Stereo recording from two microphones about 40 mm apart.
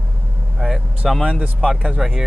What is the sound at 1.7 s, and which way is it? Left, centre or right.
Speech, right.